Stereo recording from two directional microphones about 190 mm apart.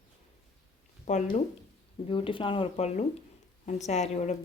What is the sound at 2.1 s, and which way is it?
Speech, 25° left (ahead or behind).